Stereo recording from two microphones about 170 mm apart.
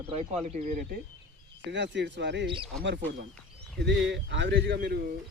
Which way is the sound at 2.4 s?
30° right (ahead or behind).